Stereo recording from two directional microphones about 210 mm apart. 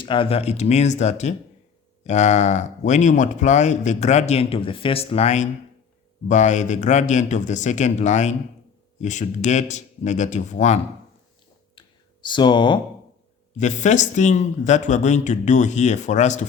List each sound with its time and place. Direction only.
0.0 s speech: 25° left (ahead or behind)
11.7 s a sound: 20° left (ahead or behind)
13.6 s speech: 35° left (ahead or behind)